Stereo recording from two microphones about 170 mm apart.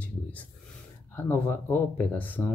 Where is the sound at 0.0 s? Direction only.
10° left (ahead or behind).